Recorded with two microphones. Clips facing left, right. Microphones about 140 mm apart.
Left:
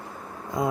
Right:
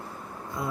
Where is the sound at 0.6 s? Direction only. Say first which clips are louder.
Left 7 dB; 20° left (ahead or behind).